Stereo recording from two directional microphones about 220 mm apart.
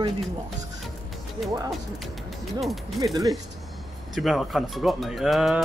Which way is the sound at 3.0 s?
15° right (ahead or behind).